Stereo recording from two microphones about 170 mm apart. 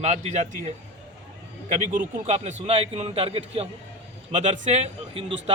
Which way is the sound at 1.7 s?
40° right (ahead or behind).